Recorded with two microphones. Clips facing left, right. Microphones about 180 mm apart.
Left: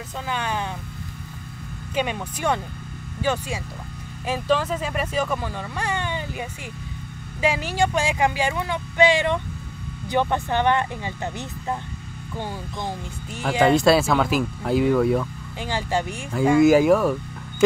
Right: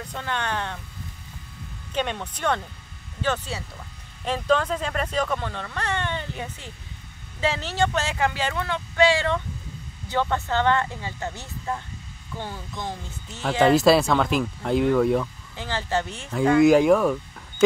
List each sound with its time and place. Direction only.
0.1 s speech: 5° left (ahead or behind)
2.0 s speech: 10° left (ahead or behind)
13.7 s speech: centre (ahead or behind)
15.6 s speech: 15° left (ahead or behind)
16.3 s speech: centre (ahead or behind)